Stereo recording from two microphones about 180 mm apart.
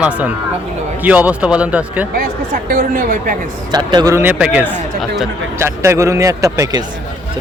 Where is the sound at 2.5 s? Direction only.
50° right (ahead or behind).